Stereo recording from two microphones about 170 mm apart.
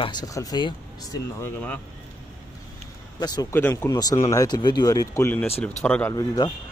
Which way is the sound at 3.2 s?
25° left (ahead or behind).